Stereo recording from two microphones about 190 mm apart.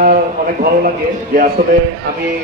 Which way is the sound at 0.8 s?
50° right (ahead or behind).